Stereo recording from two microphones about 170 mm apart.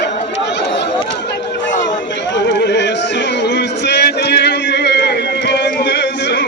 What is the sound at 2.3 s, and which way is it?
Chatter, 85° left.